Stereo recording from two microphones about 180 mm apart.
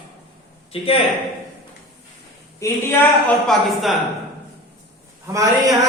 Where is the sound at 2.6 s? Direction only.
15° left (ahead or behind).